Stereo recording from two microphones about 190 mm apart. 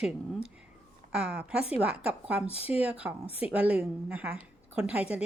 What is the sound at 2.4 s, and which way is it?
Speech, 30° left (ahead or behind).